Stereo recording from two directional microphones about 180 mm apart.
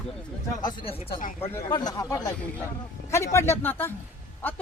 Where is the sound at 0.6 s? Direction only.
25° left (ahead or behind).